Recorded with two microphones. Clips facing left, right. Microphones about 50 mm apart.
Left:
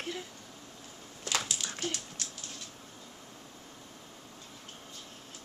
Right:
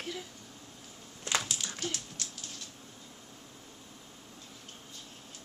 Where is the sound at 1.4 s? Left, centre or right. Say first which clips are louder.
Left 1 dB; centre.